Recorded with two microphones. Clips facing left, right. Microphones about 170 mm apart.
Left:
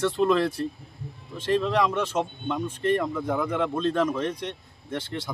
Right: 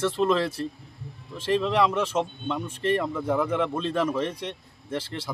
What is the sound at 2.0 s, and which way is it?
Speech, 30° right (ahead or behind).